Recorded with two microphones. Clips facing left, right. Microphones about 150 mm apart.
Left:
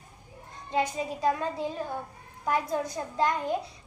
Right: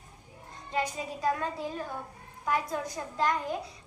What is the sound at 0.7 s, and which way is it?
A child's voice, 25° left (ahead or behind).